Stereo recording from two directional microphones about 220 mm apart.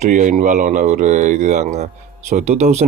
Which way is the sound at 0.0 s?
35° right (ahead or behind).